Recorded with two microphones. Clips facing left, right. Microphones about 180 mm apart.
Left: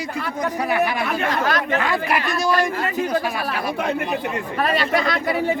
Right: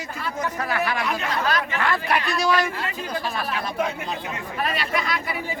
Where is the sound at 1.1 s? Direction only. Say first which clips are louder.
Left 3 dB; 55° left (ahead or behind).